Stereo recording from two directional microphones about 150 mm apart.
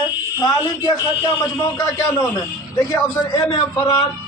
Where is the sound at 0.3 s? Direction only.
25° left (ahead or behind).